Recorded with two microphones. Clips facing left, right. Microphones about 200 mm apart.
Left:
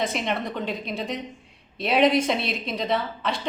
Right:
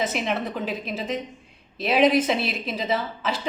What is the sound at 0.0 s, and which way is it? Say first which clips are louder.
A woman's voice: right 1 dB; 5° right (ahead or behind).